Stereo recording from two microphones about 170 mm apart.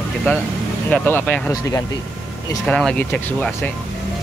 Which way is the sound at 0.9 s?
10° left (ahead or behind).